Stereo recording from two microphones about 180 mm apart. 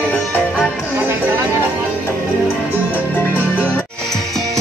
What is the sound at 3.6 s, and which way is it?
Music, centre (ahead or behind).